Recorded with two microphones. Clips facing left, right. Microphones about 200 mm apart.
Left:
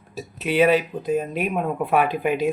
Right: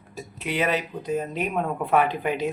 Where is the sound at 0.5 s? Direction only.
15° left (ahead or behind).